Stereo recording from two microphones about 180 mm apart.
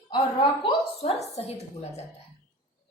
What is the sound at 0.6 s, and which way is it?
A woman's voice, 35° left (ahead or behind).